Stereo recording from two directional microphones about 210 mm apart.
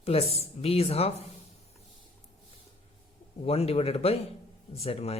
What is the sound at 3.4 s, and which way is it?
Speech, 30° left (ahead or behind).